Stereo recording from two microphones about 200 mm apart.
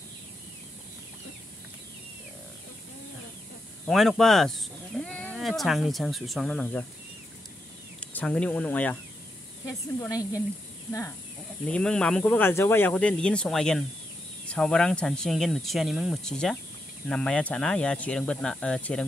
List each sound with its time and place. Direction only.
3.8 s speech: centre (ahead or behind)
8.1 s speech: 5° left (ahead or behind)